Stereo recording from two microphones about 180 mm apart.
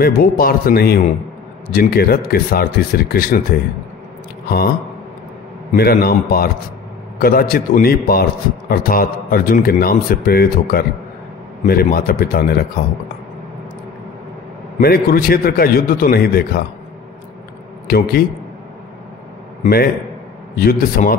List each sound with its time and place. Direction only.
0.0 s a man's voice: 55° left (ahead or behind)
5.8 s a man's voice: 60° left (ahead or behind)
14.8 s a man's voice: 55° left (ahead or behind)
17.8 s a man's voice: 55° left (ahead or behind)
19.6 s a man's voice: 55° left (ahead or behind)